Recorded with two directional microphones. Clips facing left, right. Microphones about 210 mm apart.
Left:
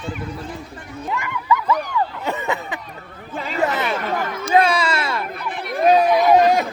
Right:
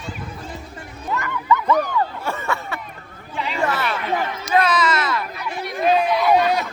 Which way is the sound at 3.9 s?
45° left (ahead or behind).